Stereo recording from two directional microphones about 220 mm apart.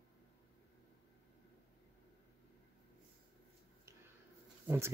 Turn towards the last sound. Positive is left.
turn(degrees=-10)  # may be behind; listen again after turning